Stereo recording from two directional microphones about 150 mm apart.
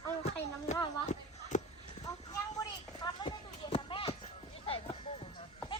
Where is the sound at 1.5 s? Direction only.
55° left (ahead or behind).